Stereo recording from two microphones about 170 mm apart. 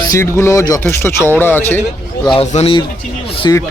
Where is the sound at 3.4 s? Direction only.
20° left (ahead or behind).